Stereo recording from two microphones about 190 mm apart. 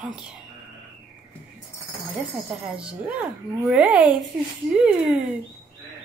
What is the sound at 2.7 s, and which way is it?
Speech, 5° right (ahead or behind).